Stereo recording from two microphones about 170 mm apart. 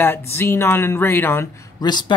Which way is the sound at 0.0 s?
15° left (ahead or behind).